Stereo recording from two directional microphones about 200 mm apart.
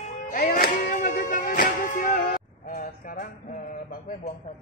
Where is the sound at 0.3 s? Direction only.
45° left (ahead or behind).